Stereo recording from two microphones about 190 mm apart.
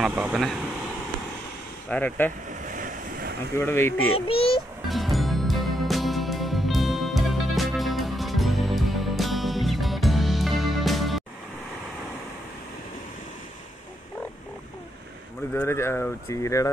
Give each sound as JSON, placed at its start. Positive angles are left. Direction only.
{"t": 0.0, "sound": "speech", "side_deg": -5}
{"t": 1.9, "sound": "speech", "side_deg": 5}
{"t": 2.6, "sound": "waves", "side_deg": -45}
{"t": 3.5, "sound": "speech", "side_deg": 10}
{"t": 4.1, "sound": "a child's voice", "side_deg": 30}
{"t": 4.8, "sound": "music", "side_deg": 0}
{"t": 15.5, "sound": "speech", "side_deg": 10}